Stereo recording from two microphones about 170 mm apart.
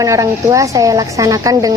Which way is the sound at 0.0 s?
20° right (ahead or behind).